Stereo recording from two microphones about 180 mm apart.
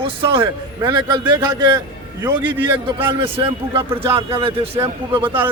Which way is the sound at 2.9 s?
30° right (ahead or behind).